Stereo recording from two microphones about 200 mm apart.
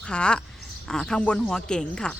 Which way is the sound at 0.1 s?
5° left (ahead or behind).